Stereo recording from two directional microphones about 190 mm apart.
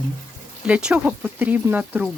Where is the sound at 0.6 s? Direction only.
5° right (ahead or behind).